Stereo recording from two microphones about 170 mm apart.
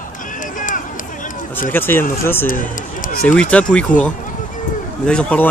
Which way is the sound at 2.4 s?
50° left (ahead or behind).